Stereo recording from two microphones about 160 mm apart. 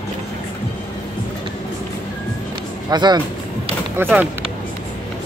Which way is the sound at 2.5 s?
25° right (ahead or behind).